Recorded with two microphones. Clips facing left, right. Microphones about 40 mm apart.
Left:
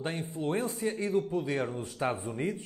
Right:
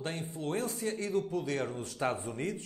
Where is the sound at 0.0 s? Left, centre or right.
Centre.